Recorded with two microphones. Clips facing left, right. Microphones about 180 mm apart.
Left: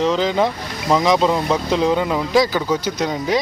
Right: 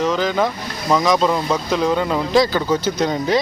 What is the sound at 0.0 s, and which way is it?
Speech, 25° left (ahead or behind).